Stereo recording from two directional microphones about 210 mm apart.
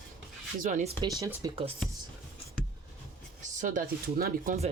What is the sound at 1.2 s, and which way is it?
Speech, 15° right (ahead or behind).